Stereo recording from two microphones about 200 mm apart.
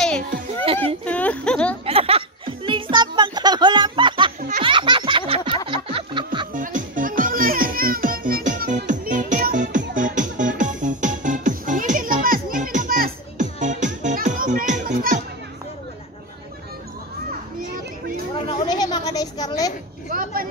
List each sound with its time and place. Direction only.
1.0 s speech: 5° left (ahead or behind)
1.9 s a sound: 30° right (ahead or behind)
4.4 s baby laughter: 40° right (ahead or behind)
4.6 s laughter: 25° right (ahead or behind)
5.7 s music: 25° right (ahead or behind)
6.5 s music: 40° right (ahead or behind)
17.6 s children playing: 45° right (ahead or behind)
18.3 s a sound: 20° left (ahead or behind)
20.1 s a sound: 45° right (ahead or behind)